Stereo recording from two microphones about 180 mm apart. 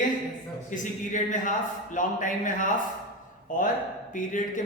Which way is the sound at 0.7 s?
45° left (ahead or behind).